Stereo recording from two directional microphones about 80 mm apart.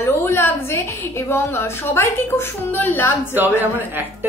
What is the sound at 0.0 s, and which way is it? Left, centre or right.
A woman's voice, left.